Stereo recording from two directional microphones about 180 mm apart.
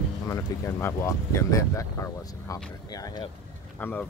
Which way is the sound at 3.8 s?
10° left (ahead or behind).